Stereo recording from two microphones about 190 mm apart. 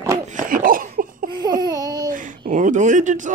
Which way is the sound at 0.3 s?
45° right (ahead or behind).